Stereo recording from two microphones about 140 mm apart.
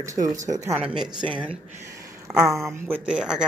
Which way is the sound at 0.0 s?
25° right (ahead or behind).